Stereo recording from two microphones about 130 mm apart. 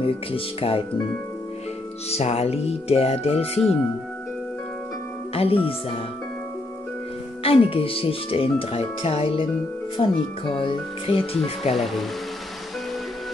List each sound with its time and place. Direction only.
0.0 s speech: 45° left (ahead or behind)
2.0 s speech: 55° left (ahead or behind)
5.3 s speech: 45° left (ahead or behind)
7.4 s speech: 45° left (ahead or behind)
11.7 s speech: centre (ahead or behind)